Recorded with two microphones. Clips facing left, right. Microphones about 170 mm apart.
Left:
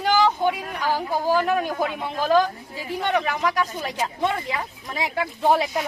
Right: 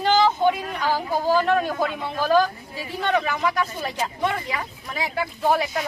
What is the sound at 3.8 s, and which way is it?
A woman's voice, 15° left (ahead or behind).